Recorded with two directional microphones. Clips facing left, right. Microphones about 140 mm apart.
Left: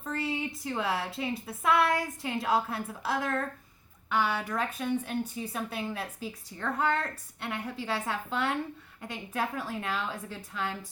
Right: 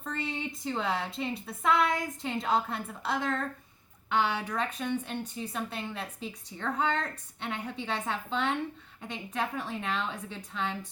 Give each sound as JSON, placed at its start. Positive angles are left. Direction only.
{"t": 0.0, "sound": "a woman's voice", "side_deg": 5}
{"t": 4.1, "sound": "speech", "side_deg": -20}
{"t": 4.4, "sound": "a woman's voice", "side_deg": 5}